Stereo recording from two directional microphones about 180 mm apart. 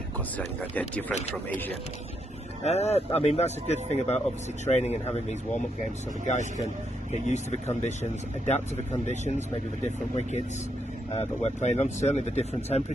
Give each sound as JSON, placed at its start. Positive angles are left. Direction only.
{"t": 0.4, "sound": "speech", "side_deg": 5}
{"t": 2.6, "sound": "speech", "side_deg": 35}
{"t": 6.2, "sound": "speech", "side_deg": 40}